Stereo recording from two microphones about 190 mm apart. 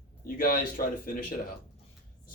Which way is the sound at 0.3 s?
50° left (ahead or behind).